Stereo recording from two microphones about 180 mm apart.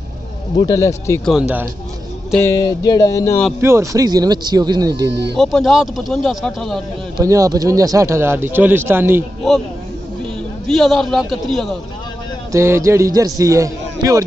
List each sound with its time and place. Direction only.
0.6 s speech: 20° left (ahead or behind)
2.3 s speech: 15° left (ahead or behind)
3.6 s speech: 15° right (ahead or behind)
5.3 s speech: centre (ahead or behind)
7.2 s speech: 20° right (ahead or behind)
10.7 s speech: centre (ahead or behind)
12.5 s speech: 15° right (ahead or behind)